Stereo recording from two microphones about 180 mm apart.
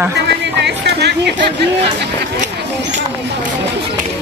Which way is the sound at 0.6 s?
70° right (ahead or behind).